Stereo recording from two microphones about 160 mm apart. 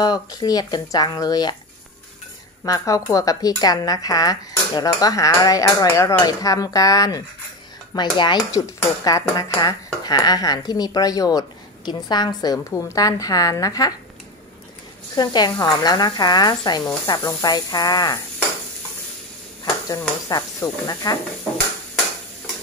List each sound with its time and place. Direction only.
0.0 s speech: 25° left (ahead or behind)
2.6 s speech: 20° left (ahead or behind)
15.1 s speech: 25° left (ahead or behind)
20.2 s speech: 25° left (ahead or behind)